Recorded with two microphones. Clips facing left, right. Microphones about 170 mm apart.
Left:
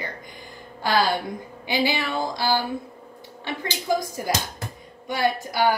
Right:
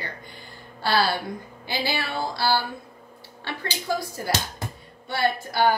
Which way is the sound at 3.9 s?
15° left (ahead or behind).